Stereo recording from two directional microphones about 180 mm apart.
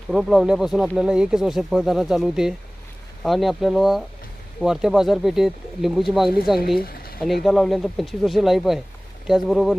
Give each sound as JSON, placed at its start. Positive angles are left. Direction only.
{"t": 0.1, "sound": "speech", "side_deg": 0}
{"t": 6.7, "sound": "a sound", "side_deg": 55}
{"t": 7.4, "sound": "speech", "side_deg": 0}